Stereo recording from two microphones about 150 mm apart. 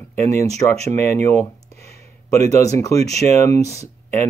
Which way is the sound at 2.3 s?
20° left (ahead or behind).